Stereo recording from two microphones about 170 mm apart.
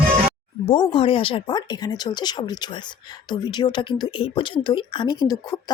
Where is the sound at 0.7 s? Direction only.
30° left (ahead or behind).